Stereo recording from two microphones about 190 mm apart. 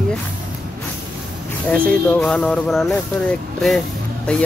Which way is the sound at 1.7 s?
5° left (ahead or behind).